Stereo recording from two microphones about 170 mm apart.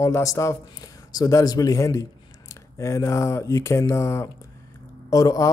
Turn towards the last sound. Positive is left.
turn(degrees=20)  # may be behind; listen again after turning